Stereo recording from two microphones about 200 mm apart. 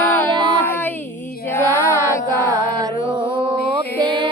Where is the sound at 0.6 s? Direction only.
10° left (ahead or behind).